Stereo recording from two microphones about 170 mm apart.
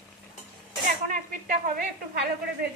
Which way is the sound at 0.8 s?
50° right (ahead or behind).